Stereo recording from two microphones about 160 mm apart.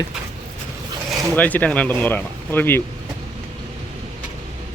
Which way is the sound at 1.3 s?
10° left (ahead or behind).